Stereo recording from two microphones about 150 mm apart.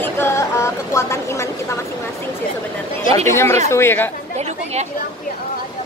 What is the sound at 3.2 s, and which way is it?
Speech, 20° left (ahead or behind).